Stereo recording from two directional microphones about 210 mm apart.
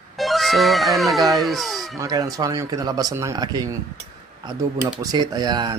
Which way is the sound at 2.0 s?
15° right (ahead or behind).